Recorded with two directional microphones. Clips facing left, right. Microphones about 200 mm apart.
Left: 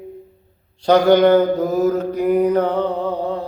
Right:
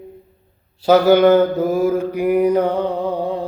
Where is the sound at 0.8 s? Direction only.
5° right (ahead or behind).